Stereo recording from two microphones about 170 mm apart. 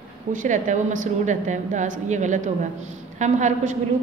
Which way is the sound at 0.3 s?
50° right (ahead or behind).